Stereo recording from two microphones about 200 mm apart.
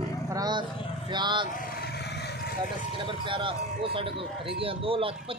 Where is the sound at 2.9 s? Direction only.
25° right (ahead or behind).